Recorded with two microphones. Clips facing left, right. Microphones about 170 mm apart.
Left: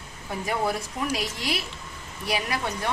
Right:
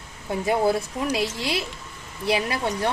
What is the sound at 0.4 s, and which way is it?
Speech, 30° right (ahead or behind).